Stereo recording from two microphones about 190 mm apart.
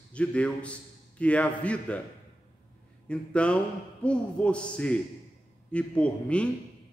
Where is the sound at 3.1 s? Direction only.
5° left (ahead or behind).